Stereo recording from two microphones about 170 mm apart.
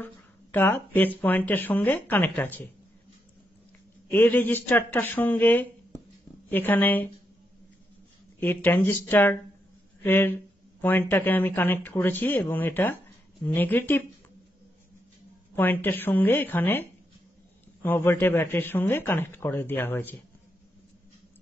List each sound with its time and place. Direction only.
0.0 s speech: 10° left (ahead or behind)
4.1 s speech: 10° left (ahead or behind)
8.4 s speech: 10° left (ahead or behind)
15.5 s speech: 10° left (ahead or behind)
17.8 s speech: 10° left (ahead or behind)